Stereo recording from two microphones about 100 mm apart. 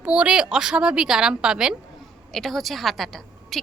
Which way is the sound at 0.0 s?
10° right (ahead or behind).